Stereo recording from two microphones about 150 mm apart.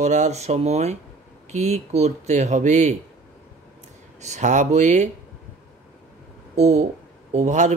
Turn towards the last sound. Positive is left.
turn(degrees=-50)  # may be behind; listen again after turning